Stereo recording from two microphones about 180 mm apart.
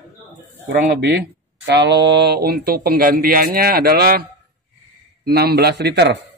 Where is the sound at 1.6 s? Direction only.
70° right (ahead or behind).